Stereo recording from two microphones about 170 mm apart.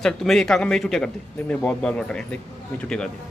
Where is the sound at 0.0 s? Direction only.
Centre (ahead or behind).